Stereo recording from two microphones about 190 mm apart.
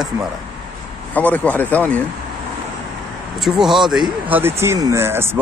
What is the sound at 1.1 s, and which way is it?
Speech, 10° left (ahead or behind).